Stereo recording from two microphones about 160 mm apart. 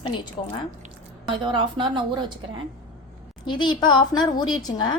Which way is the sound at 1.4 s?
30° right (ahead or behind).